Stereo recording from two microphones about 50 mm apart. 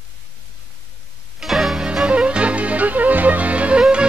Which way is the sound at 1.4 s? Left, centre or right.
Centre.